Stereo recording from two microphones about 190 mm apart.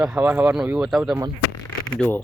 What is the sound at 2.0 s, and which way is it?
Speech, 10° left (ahead or behind).